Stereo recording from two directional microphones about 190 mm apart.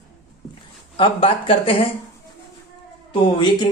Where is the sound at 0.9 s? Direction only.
30° left (ahead or behind).